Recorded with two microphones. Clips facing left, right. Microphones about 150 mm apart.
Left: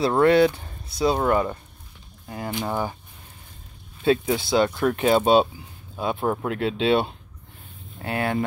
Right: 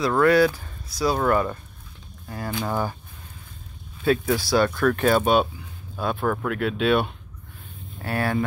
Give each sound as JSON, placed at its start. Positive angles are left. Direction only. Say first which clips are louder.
{"t": 0.0, "sound": "speech", "louder": "left 1 dB", "side_deg": 25}
{"t": 4.0, "sound": "speech", "louder": "left 1 dB", "side_deg": 25}